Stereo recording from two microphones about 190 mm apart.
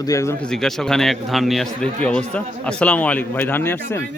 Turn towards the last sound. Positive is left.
turn(degrees=10)  # may be behind; listen again after turning